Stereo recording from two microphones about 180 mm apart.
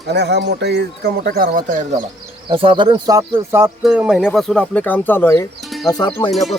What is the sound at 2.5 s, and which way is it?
Speech, 30° right (ahead or behind).